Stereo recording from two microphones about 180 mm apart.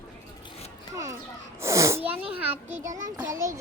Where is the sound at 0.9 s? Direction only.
15° right (ahead or behind).